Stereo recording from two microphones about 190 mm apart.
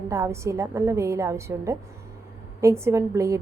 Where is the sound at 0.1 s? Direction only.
15° right (ahead or behind).